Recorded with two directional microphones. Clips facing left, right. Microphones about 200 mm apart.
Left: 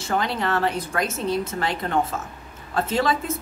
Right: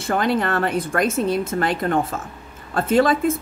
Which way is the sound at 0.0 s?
50° right (ahead or behind).